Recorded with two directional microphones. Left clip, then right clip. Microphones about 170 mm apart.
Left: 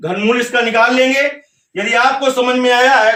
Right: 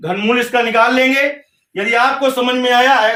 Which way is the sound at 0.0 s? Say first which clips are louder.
Left 1 dB; 20° left (ahead or behind).